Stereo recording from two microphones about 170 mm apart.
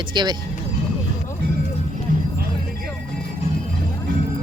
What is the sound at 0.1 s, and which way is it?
Speech, 25° right (ahead or behind).